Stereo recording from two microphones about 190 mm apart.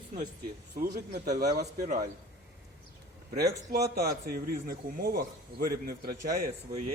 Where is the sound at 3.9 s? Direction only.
55° right (ahead or behind).